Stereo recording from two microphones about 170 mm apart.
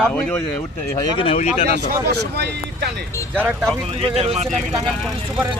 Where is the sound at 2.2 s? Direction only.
75° right (ahead or behind).